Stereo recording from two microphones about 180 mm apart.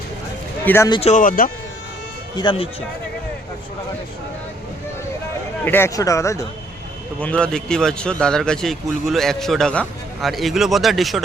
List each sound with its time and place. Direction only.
0.6 s a man's voice: 10° left (ahead or behind)
0.9 s speech: 30° left (ahead or behind)
1.1 s speech: 50° left (ahead or behind)
2.3 s speech: 25° left (ahead or behind)
5.6 s speech: 10° left (ahead or behind)